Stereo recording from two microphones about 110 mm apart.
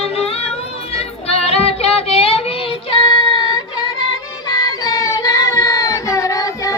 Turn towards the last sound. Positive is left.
turn(degrees=30)  # may be behind; listen again after turning